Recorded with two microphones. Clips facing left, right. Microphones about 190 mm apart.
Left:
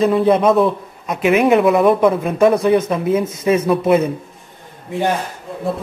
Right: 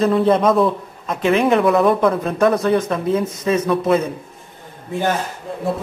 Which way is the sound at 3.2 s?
20° left (ahead or behind).